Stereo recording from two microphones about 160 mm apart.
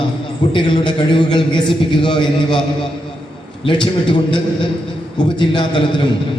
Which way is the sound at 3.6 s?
30° left (ahead or behind).